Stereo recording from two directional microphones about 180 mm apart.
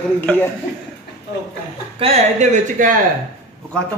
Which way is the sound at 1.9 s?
35° right (ahead or behind).